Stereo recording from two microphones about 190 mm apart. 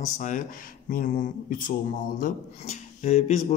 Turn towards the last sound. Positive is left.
turn(degrees=35)  # may be behind; listen again after turning